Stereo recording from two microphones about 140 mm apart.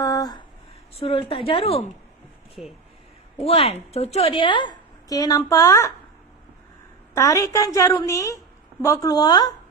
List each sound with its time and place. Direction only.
0.0 s a sound: 25° left (ahead or behind)
0.9 s a woman's voice: 45° left (ahead or behind)
3.4 s a woman's voice: 45° left (ahead or behind); by 5.9 s 20° left (ahead or behind)
7.1 s a woman's voice: 20° left (ahead or behind)